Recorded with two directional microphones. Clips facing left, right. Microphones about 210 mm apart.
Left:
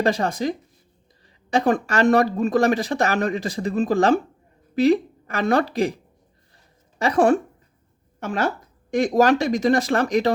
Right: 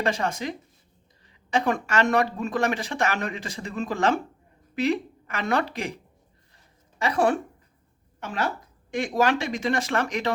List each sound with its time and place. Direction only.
0.0 s speech: 35° left (ahead or behind)
7.0 s speech: 45° left (ahead or behind)